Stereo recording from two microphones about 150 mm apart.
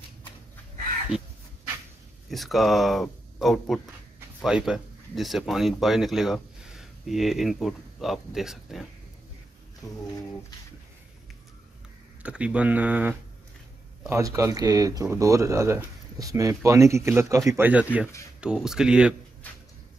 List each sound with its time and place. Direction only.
2.2 s speech: centre (ahead or behind)
12.2 s speech: 10° right (ahead or behind)
19.4 s a sound: 10° left (ahead or behind)